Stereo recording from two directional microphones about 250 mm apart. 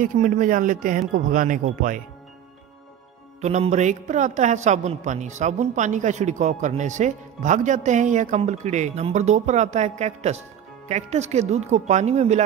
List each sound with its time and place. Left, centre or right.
0.0 s speech: right
3.3 s a woman's voice: right